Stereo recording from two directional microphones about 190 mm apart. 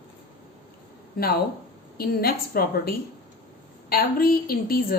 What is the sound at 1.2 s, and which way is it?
A woman's voice, 50° left (ahead or behind).